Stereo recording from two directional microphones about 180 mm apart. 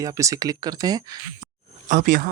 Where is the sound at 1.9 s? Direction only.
50° right (ahead or behind).